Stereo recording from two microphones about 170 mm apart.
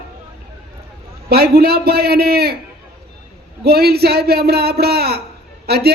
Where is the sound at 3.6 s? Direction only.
65° right (ahead or behind).